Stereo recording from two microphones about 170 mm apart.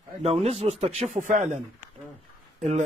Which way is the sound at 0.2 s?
35° right (ahead or behind).